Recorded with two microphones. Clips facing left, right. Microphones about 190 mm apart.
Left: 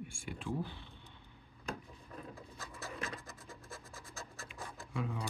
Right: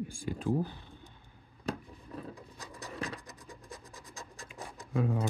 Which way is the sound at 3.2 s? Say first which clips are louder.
Right 2 dB; 20° right (ahead or behind).